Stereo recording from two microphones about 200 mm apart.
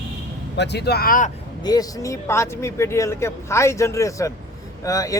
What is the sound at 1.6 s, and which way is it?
Speech, 20° left (ahead or behind).